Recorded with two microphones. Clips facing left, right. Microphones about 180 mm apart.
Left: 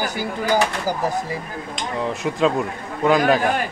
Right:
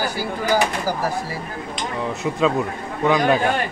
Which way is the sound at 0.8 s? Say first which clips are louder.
Left 1 dB; 20° left (ahead or behind).